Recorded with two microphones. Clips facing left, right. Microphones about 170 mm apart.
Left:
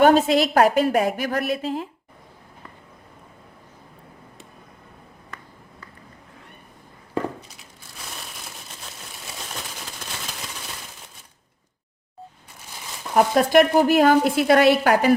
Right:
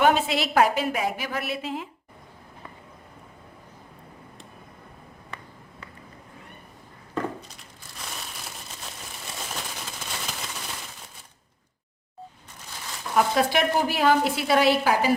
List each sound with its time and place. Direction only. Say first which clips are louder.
0.0 s a woman's voice: left 6 dB; 40° left (ahead or behind)
8.5 s a sound: even; centre (ahead or behind)
13.1 s a woman's voice: left 6 dB; 50° left (ahead or behind)